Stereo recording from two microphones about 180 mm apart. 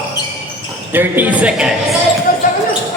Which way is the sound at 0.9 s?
10° right (ahead or behind).